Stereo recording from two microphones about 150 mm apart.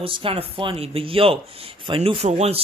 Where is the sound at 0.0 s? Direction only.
35° right (ahead or behind).